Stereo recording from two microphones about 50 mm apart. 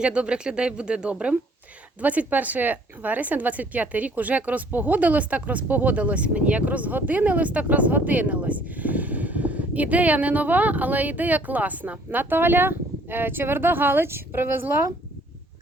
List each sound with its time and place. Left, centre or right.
0.0 s speech: right
2.0 s speech: right
12.2 s speech: right